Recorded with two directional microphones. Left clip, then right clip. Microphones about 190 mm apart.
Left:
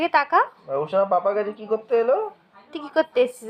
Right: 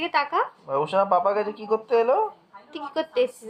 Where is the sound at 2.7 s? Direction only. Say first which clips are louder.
Left 5 dB; 20° left (ahead or behind).